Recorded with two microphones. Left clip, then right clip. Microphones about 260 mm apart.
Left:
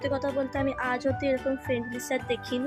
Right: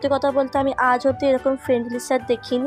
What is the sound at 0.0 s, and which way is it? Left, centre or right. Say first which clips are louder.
Speech: right 9 dB; centre.